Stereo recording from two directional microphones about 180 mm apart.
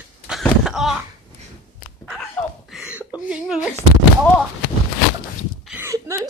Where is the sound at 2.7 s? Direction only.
5° right (ahead or behind).